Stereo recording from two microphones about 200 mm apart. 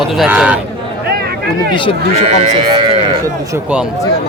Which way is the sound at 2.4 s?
30° right (ahead or behind).